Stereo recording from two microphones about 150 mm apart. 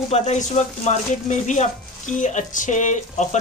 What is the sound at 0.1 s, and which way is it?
Speech, 50° left (ahead or behind).